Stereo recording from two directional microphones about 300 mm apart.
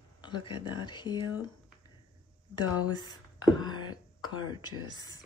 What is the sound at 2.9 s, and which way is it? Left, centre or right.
Speech, centre.